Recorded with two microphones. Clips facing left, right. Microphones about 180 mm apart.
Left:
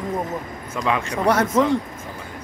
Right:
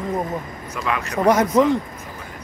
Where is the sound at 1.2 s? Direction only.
10° right (ahead or behind).